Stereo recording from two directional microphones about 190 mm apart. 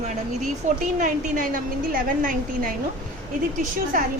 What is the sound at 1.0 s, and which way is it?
A woman's voice, 45° right (ahead or behind).